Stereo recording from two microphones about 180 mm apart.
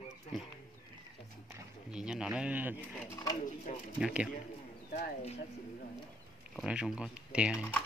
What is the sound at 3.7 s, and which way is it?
Speech, 40° left (ahead or behind).